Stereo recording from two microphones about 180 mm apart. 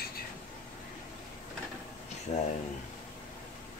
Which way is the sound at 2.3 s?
35° left (ahead or behind).